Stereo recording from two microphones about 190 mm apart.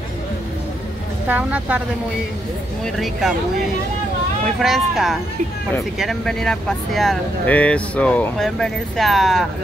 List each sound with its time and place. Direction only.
1.2 s a woman's voice: 10° right (ahead or behind)
3.0 s speech: centre (ahead or behind)
4.6 s speech: centre (ahead or behind)